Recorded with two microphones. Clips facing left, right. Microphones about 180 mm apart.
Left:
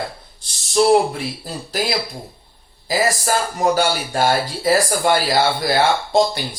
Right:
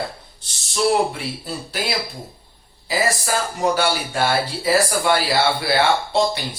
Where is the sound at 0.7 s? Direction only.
40° left (ahead or behind).